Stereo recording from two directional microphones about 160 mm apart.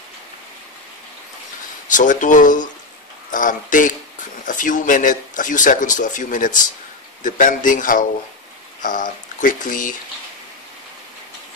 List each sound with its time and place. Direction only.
1.9 s speech: 55° left (ahead or behind)
3.3 s a sound: 55° left (ahead or behind)
4.5 s speech: 55° left (ahead or behind)